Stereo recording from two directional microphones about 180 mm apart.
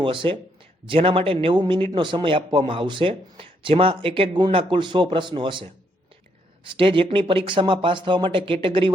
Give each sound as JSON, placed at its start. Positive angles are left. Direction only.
{"t": 0.0, "sound": "a man's voice", "side_deg": -25}
{"t": 6.7, "sound": "a man's voice", "side_deg": -30}